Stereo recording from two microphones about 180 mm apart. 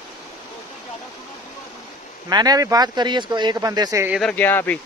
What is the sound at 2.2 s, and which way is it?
Speech, 20° right (ahead or behind).